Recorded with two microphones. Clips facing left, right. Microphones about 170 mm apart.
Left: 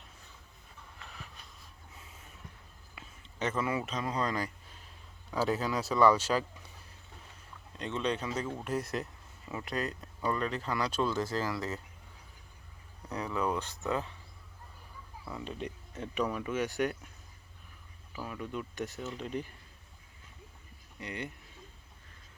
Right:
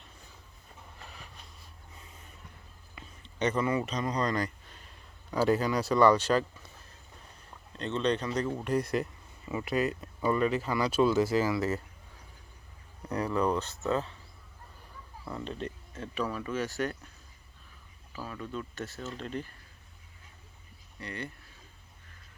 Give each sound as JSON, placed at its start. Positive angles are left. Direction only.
{"t": 1.0, "sound": "vehicle", "side_deg": 0}
{"t": 2.9, "sound": "a sound", "side_deg": 5}
{"t": 5.3, "sound": "speech", "side_deg": 0}
{"t": 7.8, "sound": "speech", "side_deg": 10}
{"t": 13.1, "sound": "speech", "side_deg": 0}
{"t": 15.2, "sound": "speech", "side_deg": 5}
{"t": 18.1, "sound": "speech", "side_deg": 10}
{"t": 21.0, "sound": "speech", "side_deg": 20}